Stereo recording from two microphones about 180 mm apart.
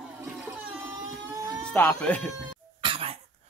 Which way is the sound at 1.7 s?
10° left (ahead or behind).